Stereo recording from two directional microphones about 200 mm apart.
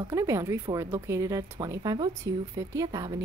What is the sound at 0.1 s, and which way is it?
A woman's voice, 15° right (ahead or behind).